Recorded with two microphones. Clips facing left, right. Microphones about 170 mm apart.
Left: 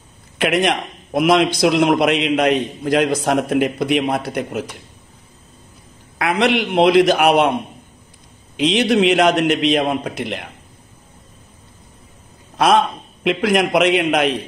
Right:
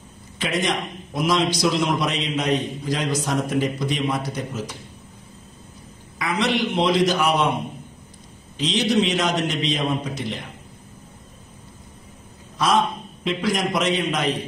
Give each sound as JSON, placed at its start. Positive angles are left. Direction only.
{"t": 0.4, "sound": "a man's voice", "side_deg": 65}
{"t": 6.1, "sound": "a man's voice", "side_deg": 65}
{"t": 8.5, "sound": "a man's voice", "side_deg": 60}
{"t": 12.5, "sound": "a man's voice", "side_deg": 65}